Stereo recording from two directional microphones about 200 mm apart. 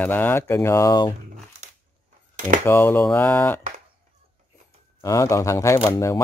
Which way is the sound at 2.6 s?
10° left (ahead or behind).